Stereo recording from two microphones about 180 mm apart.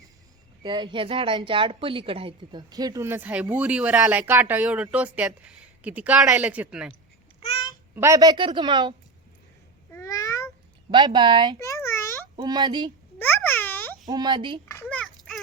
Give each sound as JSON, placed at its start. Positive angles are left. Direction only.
{"t": 0.6, "sound": "a woman's voice", "side_deg": -25}
{"t": 7.9, "sound": "a woman's voice", "side_deg": -15}
{"t": 9.9, "sound": "meow", "side_deg": 15}
{"t": 10.9, "sound": "a woman's voice", "side_deg": -25}
{"t": 11.6, "sound": "a sound", "side_deg": 15}
{"t": 12.4, "sound": "a woman's voice", "side_deg": -25}
{"t": 13.1, "sound": "a sound", "side_deg": 10}
{"t": 14.1, "sound": "a woman's voice", "side_deg": -25}
{"t": 14.7, "sound": "a sound", "side_deg": 10}